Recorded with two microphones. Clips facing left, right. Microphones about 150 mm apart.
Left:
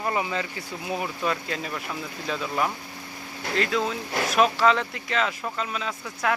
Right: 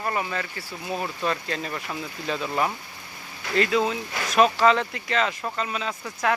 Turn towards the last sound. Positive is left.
turn(degrees=0)  # may be behind; listen again after turning